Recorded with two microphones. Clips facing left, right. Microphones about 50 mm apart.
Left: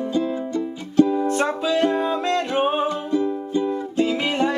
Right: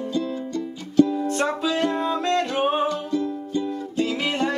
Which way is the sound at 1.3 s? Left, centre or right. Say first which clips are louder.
Left 2 dB; centre.